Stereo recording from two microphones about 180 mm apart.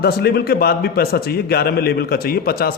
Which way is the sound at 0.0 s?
60° left (ahead or behind).